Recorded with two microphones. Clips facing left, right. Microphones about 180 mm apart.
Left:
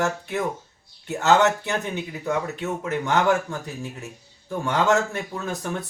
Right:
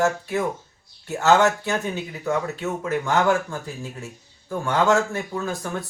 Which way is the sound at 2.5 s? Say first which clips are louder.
Right 1 dB; 20° left (ahead or behind).